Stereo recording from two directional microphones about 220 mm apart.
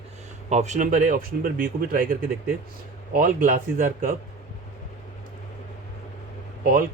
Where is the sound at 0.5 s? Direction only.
30° right (ahead or behind).